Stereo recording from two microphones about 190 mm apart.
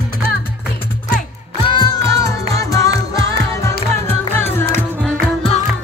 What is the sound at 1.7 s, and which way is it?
Music, 20° left (ahead or behind).